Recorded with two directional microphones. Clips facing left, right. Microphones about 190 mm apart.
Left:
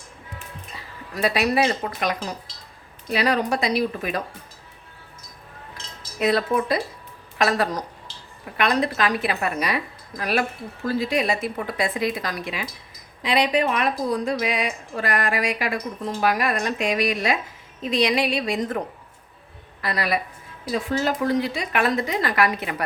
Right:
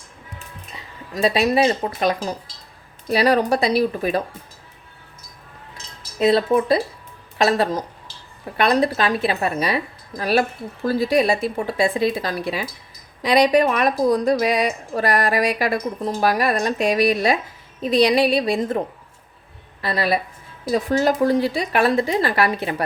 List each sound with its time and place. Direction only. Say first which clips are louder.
0.8 s a woman's voice: right 4 dB; 25° right (ahead or behind)
6.1 s a woman's voice: right 4 dB; 25° right (ahead or behind)
19.8 s a woman's voice: right 4 dB; 30° right (ahead or behind)
20.7 s a woman's voice: right 5 dB; 40° right (ahead or behind)